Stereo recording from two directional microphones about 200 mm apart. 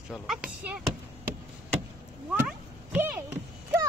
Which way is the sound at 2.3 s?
10° right (ahead or behind).